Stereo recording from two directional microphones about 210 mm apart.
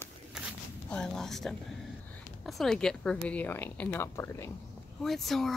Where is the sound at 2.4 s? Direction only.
Centre (ahead or behind).